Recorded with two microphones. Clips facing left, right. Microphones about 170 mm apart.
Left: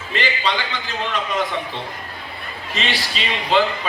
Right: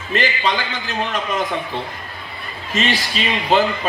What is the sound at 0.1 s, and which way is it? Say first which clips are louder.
Speech: right 3 dB; 45° right (ahead or behind).